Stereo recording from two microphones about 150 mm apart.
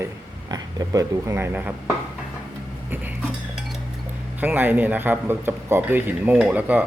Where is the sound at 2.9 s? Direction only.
10° right (ahead or behind).